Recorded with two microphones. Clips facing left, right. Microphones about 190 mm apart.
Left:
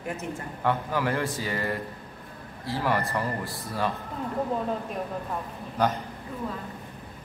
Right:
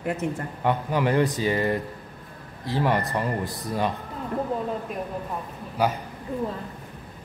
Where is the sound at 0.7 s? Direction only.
20° right (ahead or behind).